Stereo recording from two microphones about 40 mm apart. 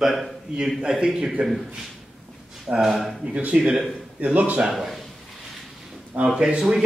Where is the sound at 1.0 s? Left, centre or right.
Right.